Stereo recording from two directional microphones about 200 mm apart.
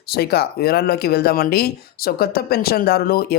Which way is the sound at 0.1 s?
50° left (ahead or behind).